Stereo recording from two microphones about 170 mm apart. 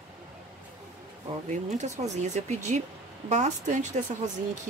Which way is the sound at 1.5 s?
45° right (ahead or behind).